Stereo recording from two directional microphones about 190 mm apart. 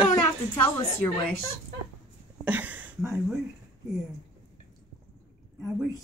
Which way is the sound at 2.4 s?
10° right (ahead or behind).